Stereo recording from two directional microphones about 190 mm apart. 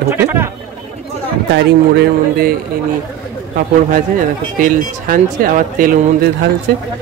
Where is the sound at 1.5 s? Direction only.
55° right (ahead or behind).